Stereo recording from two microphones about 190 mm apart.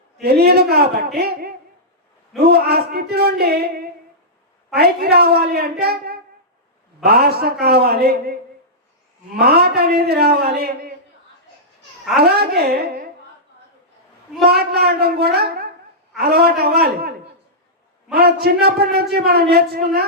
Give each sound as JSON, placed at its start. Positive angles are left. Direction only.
{"t": 0.2, "sound": "speech", "side_deg": -55}
{"t": 9.4, "sound": "speech", "side_deg": -55}
{"t": 12.2, "sound": "speech", "side_deg": -55}
{"t": 14.4, "sound": "speech", "side_deg": -55}